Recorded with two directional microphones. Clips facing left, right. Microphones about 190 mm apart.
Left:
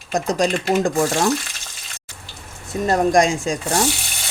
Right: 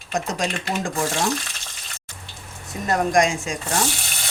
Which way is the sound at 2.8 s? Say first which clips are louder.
Left 3 dB; 30° left (ahead or behind).